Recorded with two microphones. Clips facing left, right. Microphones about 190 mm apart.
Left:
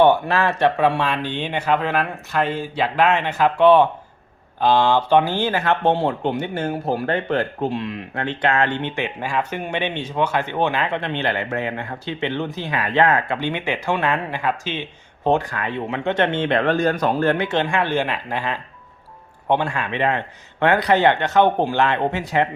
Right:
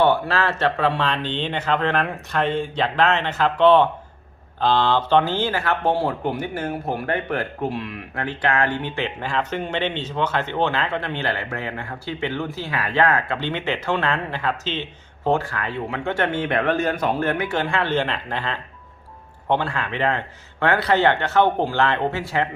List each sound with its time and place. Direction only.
0.0 s speech: 15° left (ahead or behind)